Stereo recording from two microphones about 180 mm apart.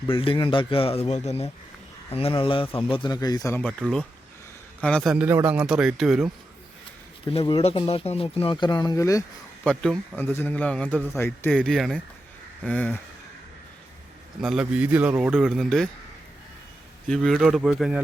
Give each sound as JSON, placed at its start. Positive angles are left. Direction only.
{"t": 0.1, "sound": "speech", "side_deg": 30}
{"t": 5.1, "sound": "speech", "side_deg": -10}
{"t": 7.3, "sound": "speech", "side_deg": 30}
{"t": 9.6, "sound": "a man's voice", "side_deg": 5}
{"t": 14.4, "sound": "speech", "side_deg": -5}
{"t": 17.1, "sound": "speech", "side_deg": 0}